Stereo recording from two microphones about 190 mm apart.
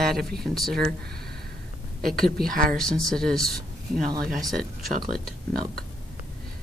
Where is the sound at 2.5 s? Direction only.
45° right (ahead or behind).